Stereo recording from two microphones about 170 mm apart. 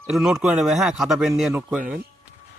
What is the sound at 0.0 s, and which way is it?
Speech, centre (ahead or behind).